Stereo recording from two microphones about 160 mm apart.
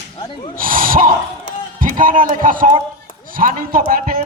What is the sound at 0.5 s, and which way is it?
Speech, 60° right (ahead or behind).